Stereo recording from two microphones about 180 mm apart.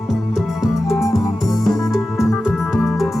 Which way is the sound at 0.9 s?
15° left (ahead or behind).